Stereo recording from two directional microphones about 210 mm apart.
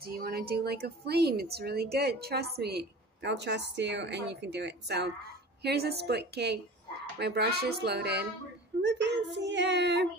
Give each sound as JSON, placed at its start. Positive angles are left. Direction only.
{"t": 0.0, "sound": "a woman's voice", "side_deg": -45}